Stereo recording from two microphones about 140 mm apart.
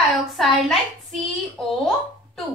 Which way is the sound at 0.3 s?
Centre (ahead or behind).